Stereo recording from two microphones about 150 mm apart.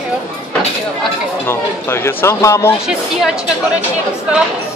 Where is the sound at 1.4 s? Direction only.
15° left (ahead or behind).